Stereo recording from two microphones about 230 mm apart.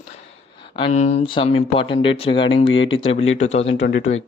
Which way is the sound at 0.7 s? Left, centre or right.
Left.